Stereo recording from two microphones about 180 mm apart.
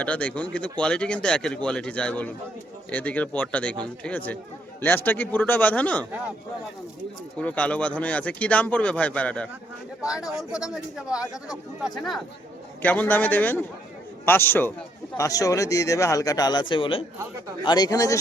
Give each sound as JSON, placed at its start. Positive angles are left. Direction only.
{"t": 0.0, "sound": "speech", "side_deg": 5}
{"t": 7.3, "sound": "speech", "side_deg": 5}
{"t": 10.0, "sound": "speech", "side_deg": -5}